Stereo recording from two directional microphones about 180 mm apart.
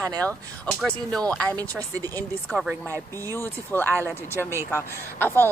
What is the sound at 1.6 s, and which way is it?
Speech, 20° right (ahead or behind).